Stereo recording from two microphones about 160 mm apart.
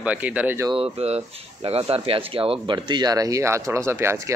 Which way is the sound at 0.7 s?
40° right (ahead or behind).